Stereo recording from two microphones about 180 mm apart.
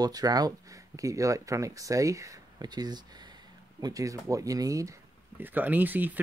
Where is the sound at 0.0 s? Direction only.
20° right (ahead or behind).